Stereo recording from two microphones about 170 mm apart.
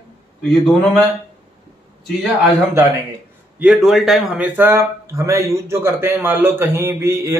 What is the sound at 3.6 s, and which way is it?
Speech, centre (ahead or behind).